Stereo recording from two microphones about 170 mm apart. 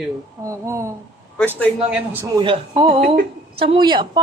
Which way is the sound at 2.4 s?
25° right (ahead or behind).